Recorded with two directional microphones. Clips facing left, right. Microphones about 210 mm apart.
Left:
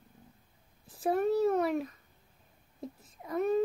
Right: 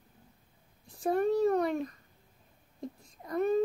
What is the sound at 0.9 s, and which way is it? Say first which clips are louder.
A child's voice: even; centre (ahead or behind).